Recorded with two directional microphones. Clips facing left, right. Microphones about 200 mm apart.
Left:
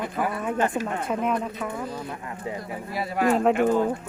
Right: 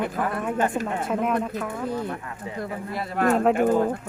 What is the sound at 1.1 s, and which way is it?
Speech, centre (ahead or behind).